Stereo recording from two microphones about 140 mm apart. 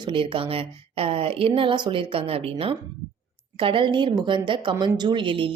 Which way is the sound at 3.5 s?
40° right (ahead or behind).